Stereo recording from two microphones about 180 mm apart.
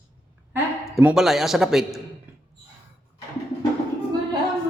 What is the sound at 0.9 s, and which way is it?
A man's voice, 5° right (ahead or behind).